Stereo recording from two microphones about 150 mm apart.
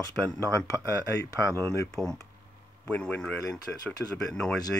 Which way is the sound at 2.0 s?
Centre (ahead or behind).